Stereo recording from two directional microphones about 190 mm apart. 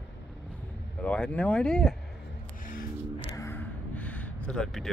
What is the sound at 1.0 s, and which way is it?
Speech, 5° left (ahead or behind).